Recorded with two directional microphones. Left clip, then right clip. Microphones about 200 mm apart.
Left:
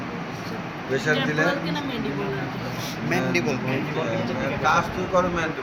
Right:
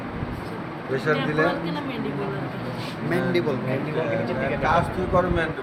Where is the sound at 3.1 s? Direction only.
20° right (ahead or behind).